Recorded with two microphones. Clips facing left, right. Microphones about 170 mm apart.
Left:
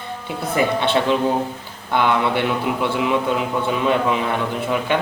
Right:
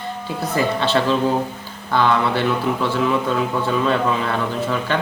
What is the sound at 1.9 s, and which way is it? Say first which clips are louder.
Speech: even; 15° left (ahead or behind).